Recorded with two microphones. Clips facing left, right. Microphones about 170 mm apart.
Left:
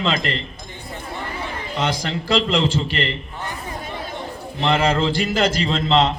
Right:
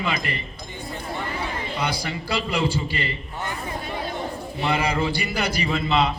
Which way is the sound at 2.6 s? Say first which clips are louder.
Left 4 dB; 75° left (ahead or behind).